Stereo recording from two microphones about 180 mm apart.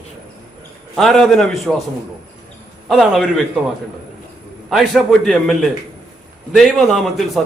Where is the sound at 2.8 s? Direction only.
Centre (ahead or behind).